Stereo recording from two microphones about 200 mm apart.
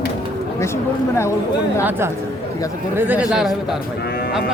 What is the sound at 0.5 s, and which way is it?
Speech, 15° left (ahead or behind).